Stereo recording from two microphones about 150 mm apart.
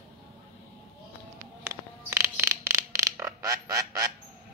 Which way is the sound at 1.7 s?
15° right (ahead or behind).